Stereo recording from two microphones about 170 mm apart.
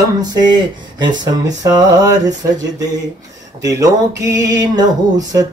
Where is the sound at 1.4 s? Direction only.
20° right (ahead or behind).